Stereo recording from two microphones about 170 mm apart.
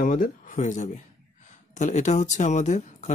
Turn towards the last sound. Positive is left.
turn(degrees=45)  # may be behind; listen again after turning